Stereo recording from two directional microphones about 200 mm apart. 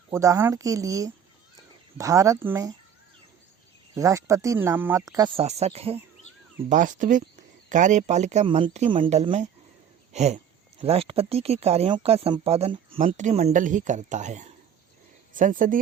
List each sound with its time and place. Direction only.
0.1 s speech: 15° right (ahead or behind)
3.9 s speech: 15° right (ahead or behind)
5.4 s speech: 30° right (ahead or behind)
6.7 s speech: 40° right (ahead or behind)